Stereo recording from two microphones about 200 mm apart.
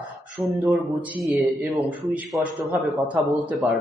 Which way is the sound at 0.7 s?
Centre (ahead or behind).